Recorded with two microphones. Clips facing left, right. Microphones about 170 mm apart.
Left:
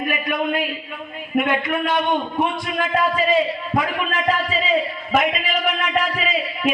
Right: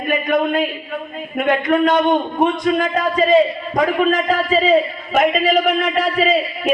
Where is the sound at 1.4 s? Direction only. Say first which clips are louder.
Right 5 dB; 45° right (ahead or behind).